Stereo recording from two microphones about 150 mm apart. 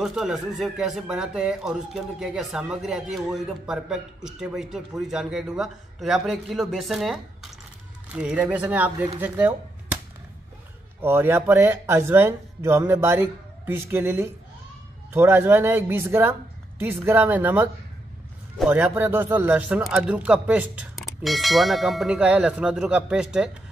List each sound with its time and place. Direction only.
0.0 s speech: 5° right (ahead or behind)
11.0 s speech: 15° right (ahead or behind)
18.9 s speech: 15° right (ahead or behind)